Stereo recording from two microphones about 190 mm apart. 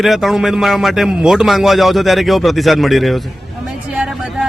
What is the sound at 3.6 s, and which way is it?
Vehicle, 5° right (ahead or behind).